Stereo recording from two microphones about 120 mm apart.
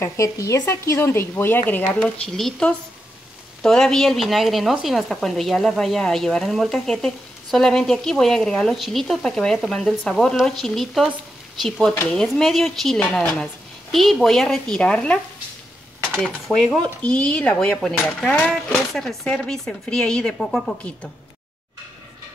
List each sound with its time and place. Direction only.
0.0 s speech: 25° left (ahead or behind)
2.0 s a woman's voice: 5° left (ahead or behind)
12.1 s a woman's voice: 5° left (ahead or behind)